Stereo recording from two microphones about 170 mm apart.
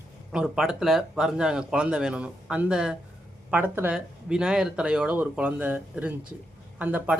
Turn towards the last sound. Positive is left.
turn(degrees=-10)  # may be behind; listen again after turning